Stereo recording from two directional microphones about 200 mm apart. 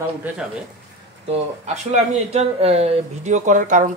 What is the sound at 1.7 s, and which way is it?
Speech, 35° right (ahead or behind).